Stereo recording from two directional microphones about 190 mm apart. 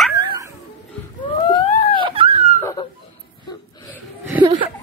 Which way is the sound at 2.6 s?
20° left (ahead or behind).